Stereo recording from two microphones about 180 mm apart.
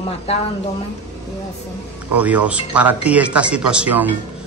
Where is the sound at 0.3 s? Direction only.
35° left (ahead or behind).